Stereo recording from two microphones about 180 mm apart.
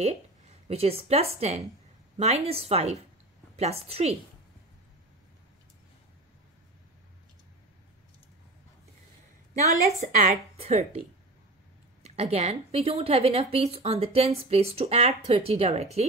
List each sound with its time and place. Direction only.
0.0 s a woman's voice: 35° right (ahead or behind)
9.9 s a woman's voice: 45° right (ahead or behind)
12.0 s a woman's voice: 35° right (ahead or behind)